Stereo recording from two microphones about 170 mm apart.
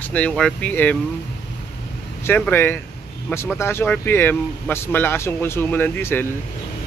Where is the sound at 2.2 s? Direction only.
15° left (ahead or behind).